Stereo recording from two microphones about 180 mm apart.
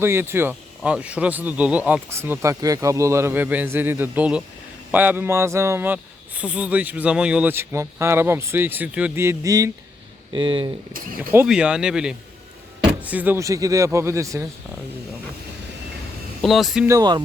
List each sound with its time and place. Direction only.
0.0 s speech: 15° right (ahead or behind)
10.3 s speech: 30° right (ahead or behind)
11.2 s speech: 10° right (ahead or behind)
16.4 s speech: centre (ahead or behind)
16.8 s speech: 20° right (ahead or behind)